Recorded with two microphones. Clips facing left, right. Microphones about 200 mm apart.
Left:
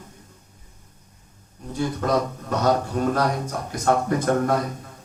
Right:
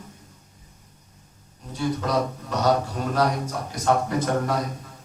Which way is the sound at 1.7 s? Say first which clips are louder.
Left 2 dB; 50° left (ahead or behind).